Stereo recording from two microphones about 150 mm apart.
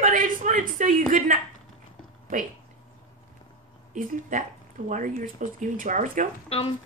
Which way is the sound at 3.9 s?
60° right (ahead or behind).